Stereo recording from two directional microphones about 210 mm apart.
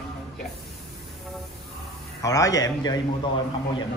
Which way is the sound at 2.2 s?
15° left (ahead or behind).